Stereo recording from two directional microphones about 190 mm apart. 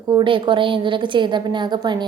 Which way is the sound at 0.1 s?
25° right (ahead or behind).